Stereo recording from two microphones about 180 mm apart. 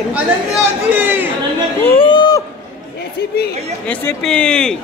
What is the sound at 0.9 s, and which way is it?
Chatter, 10° right (ahead or behind).